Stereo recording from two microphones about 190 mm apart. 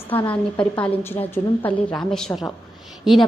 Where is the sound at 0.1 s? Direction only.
10° left (ahead or behind).